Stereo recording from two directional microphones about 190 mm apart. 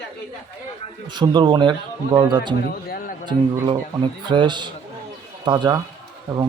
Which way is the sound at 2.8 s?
50° left (ahead or behind).